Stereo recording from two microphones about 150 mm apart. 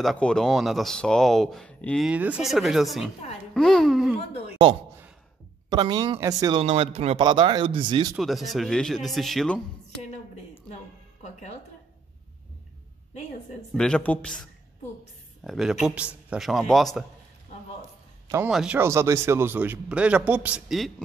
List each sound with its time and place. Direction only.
0.0 s speech: 5° left (ahead or behind)
2.0 s speech: 10° right (ahead or behind)
5.7 s speech: 30° right (ahead or behind)
8.2 s speech: centre (ahead or behind)
13.7 s speech: 5° left (ahead or behind)
15.4 s speech: centre (ahead or behind)
18.5 s speech: 5° right (ahead or behind)
18.8 s a man's voice: 20° right (ahead or behind); by 20.9 s centre (ahead or behind)